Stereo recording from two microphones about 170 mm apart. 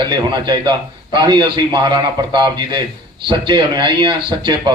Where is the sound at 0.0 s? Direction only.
25° right (ahead or behind).